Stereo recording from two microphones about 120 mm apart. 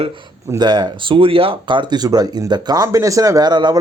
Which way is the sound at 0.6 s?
40° right (ahead or behind).